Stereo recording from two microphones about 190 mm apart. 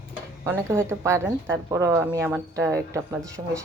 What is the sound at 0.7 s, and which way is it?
A woman's voice, 15° right (ahead or behind).